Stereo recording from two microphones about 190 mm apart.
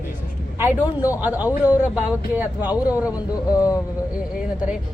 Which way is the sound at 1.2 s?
10° right (ahead or behind).